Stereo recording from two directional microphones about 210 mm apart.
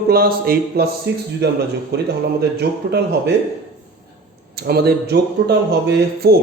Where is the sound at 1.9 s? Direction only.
50° right (ahead or behind).